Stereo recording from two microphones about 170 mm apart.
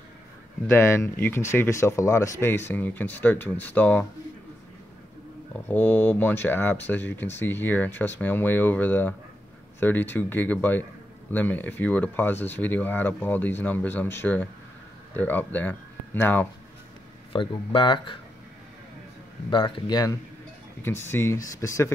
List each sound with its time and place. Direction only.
0.7 s speech: 15° left (ahead or behind)
5.7 s speech: 10° left (ahead or behind)
17.3 s speech: 30° left (ahead or behind)
19.5 s speech: 25° left (ahead or behind)